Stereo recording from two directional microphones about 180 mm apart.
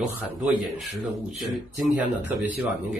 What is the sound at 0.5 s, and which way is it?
A man's voice, centre (ahead or behind).